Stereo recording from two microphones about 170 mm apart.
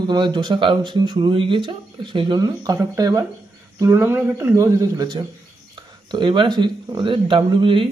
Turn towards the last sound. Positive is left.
turn(degrees=-30)  # may be behind; listen again after turning